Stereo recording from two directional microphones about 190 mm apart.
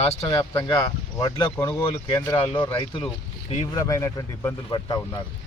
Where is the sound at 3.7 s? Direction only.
15° left (ahead or behind).